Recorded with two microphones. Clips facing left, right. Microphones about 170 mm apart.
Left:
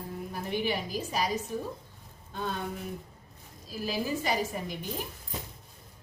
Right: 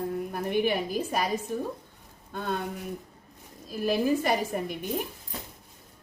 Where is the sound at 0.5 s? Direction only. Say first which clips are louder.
Right 5 dB; 55° right (ahead or behind).